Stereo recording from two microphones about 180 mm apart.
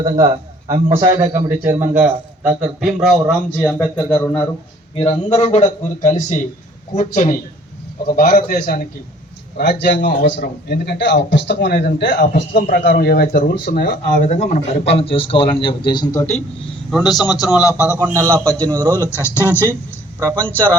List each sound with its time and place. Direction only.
0.7 s a man's voice: 30° right (ahead or behind)
1.2 s a man's voice: 15° right (ahead or behind); by 4.4 s 10° left (ahead or behind)
4.9 s a man's voice: 35° left (ahead or behind)
8.0 s a man's voice: 55° left (ahead or behind)
14.3 s a man's voice: 40° left (ahead or behind); by 17.9 s 15° left (ahead or behind)
17.9 s a man's voice: 15° right (ahead or behind)
18.3 s speech: 5° left (ahead or behind)
18.6 s a man's voice: 20° right (ahead or behind)
18.9 s speech: 15° left (ahead or behind)